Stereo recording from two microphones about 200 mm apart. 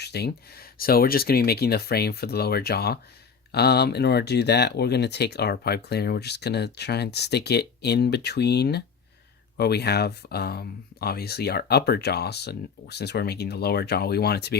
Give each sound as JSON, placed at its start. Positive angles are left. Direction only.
{"t": 0.0, "sound": "speech", "side_deg": 55}